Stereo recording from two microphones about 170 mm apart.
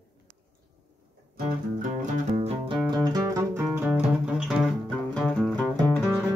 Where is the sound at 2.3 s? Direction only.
35° right (ahead or behind).